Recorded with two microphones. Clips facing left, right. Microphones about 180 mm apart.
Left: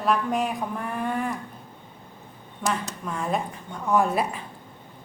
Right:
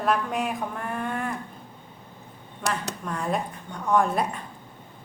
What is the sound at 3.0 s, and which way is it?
A woman's voice, centre (ahead or behind).